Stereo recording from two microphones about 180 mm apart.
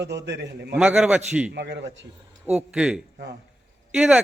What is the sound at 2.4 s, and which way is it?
A man's voice, 5° right (ahead or behind).